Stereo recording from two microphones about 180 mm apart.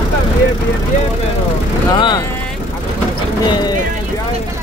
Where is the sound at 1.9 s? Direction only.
25° left (ahead or behind).